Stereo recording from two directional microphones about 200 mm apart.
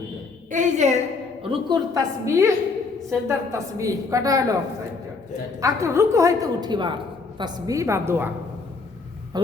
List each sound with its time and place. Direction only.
0.5 s a woman's voice: 40° right (ahead or behind)
1.4 s a woman's voice: 20° right (ahead or behind)
5.5 s a woman's voice: 15° right (ahead or behind)
9.3 s a sound: 20° right (ahead or behind)